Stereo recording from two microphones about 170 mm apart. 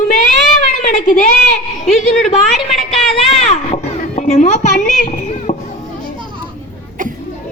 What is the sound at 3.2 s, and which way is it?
Children playing, 35° left (ahead or behind).